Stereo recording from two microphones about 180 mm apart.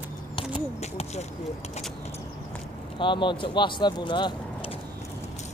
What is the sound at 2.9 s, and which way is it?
Speech, 25° left (ahead or behind).